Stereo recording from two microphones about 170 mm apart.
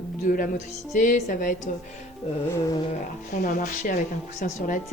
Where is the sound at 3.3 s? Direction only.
55° left (ahead or behind).